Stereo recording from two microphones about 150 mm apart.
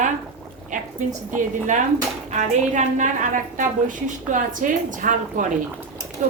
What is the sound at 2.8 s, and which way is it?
A woman's voice, 55° right (ahead or behind).